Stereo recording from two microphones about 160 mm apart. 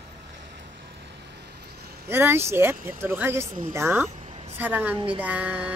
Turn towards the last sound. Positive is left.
turn(degrees=-10)  # may be behind; listen again after turning